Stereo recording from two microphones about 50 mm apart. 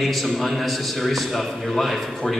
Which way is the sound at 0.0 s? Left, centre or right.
Centre.